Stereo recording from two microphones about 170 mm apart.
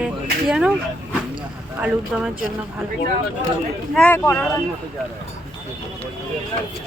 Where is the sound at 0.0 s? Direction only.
5° right (ahead or behind).